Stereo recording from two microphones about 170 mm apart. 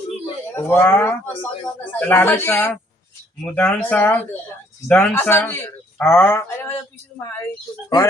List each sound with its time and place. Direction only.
0.5 s speech: 10° left (ahead or behind)